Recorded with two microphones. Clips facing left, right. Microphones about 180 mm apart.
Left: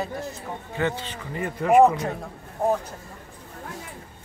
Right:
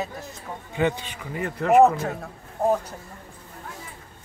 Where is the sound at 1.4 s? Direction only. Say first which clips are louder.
Even; centre (ahead or behind).